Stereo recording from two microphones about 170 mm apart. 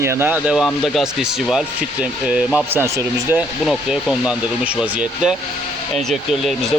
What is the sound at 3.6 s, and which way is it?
Speech, centre (ahead or behind).